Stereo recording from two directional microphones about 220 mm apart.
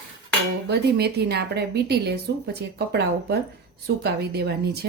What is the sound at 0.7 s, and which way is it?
Speech, 50° right (ahead or behind).